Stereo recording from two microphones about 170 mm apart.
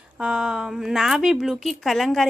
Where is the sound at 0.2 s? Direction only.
5° right (ahead or behind).